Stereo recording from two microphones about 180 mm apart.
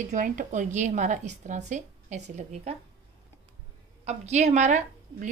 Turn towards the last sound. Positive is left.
turn(degrees=-40)  # may be behind; listen again after turning